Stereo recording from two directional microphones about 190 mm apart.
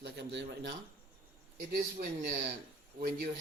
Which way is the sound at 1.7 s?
50° right (ahead or behind).